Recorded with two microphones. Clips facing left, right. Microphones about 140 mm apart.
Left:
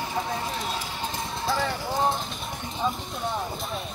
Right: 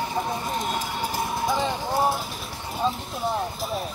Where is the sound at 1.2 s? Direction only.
60° right (ahead or behind).